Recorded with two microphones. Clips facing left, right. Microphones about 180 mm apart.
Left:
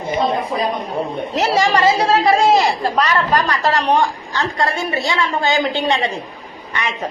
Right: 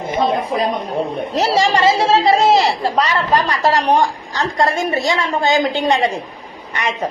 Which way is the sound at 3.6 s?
35° right (ahead or behind).